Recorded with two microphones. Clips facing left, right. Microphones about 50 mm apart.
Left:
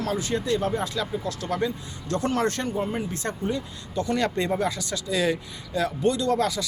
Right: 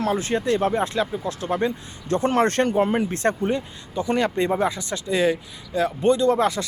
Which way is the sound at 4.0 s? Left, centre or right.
Centre.